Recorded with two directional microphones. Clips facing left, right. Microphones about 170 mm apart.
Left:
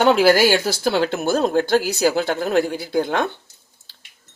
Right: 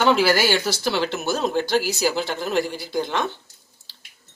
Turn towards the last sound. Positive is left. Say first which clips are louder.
# left 4 dB
turn(degrees=55)  # may be behind; listen again after turning